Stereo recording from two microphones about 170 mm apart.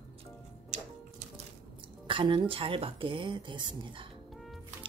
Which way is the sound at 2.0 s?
30° right (ahead or behind).